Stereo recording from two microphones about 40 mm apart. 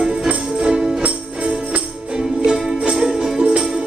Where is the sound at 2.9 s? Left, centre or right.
Centre.